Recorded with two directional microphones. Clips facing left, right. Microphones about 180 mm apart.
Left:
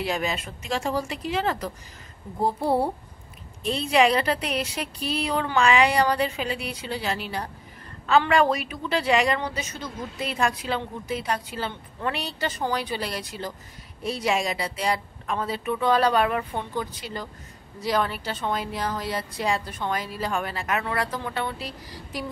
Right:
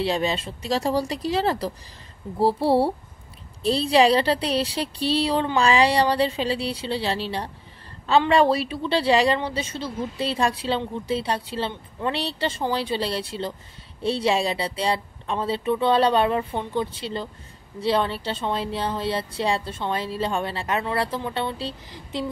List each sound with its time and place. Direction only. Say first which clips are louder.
0.0 s a woman's voice: right 4 dB; 30° right (ahead or behind)